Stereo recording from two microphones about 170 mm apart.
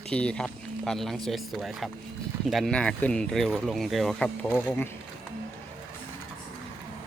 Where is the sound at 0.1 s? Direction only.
5° left (ahead or behind).